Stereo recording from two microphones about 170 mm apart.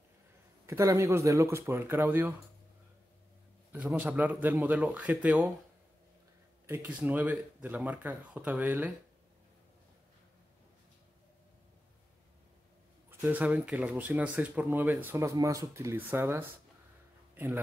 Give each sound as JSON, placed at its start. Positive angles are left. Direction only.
{"t": 0.7, "sound": "speech", "side_deg": -15}
{"t": 3.7, "sound": "speech", "side_deg": -10}
{"t": 6.6, "sound": "speech", "side_deg": -15}
{"t": 13.2, "sound": "speech", "side_deg": -10}